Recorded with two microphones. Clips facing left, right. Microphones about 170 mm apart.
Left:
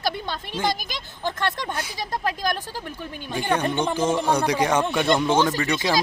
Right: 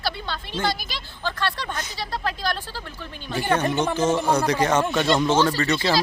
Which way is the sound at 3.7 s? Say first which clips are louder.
Right 1 dB; 5° right (ahead or behind).